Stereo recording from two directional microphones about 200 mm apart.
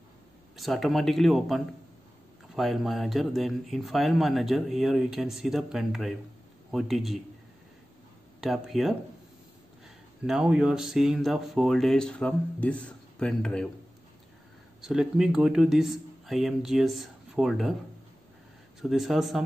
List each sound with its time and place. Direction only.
0.6 s speech: centre (ahead or behind)
8.4 s speech: centre (ahead or behind)
10.2 s a man's voice: 5° right (ahead or behind)
14.8 s speech: centre (ahead or behind)
18.8 s speech: centre (ahead or behind)